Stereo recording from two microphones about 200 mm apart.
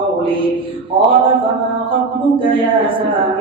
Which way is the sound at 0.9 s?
25° right (ahead or behind).